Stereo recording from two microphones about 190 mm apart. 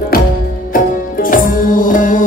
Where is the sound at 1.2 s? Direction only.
45° left (ahead or behind).